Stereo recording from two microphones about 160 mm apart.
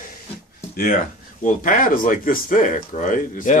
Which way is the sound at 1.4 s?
55° left (ahead or behind).